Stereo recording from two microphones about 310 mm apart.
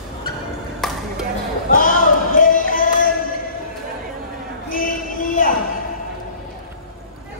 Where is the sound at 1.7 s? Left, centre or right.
Left.